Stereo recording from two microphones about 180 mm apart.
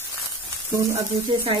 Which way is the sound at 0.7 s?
15° right (ahead or behind).